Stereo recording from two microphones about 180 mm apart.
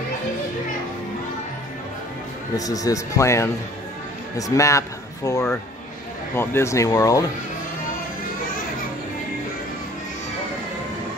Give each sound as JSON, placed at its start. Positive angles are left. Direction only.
{"t": 2.5, "sound": "speech", "side_deg": 20}